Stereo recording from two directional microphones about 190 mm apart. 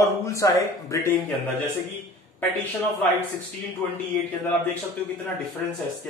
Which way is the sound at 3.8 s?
10° left (ahead or behind).